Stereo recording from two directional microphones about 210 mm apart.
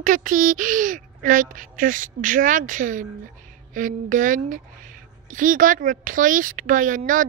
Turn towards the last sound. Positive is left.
turn(degrees=-40)  # may be behind; listen again after turning